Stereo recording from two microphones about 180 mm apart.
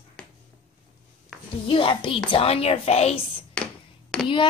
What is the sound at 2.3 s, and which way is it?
Speech, 35° left (ahead or behind).